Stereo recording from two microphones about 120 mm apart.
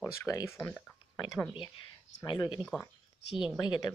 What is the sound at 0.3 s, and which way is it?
Speech, 25° left (ahead or behind).